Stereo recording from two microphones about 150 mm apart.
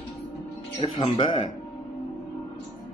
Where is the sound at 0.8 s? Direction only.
30° left (ahead or behind).